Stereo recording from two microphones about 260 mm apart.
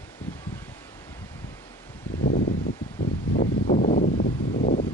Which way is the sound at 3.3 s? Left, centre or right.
Left.